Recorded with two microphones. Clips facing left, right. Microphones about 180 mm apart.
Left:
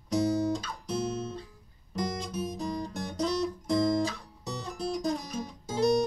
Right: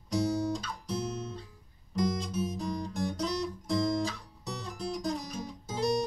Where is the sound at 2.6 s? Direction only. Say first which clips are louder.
Even; 5° left (ahead or behind).